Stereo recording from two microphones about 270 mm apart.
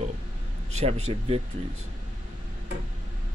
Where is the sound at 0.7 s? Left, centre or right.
Right.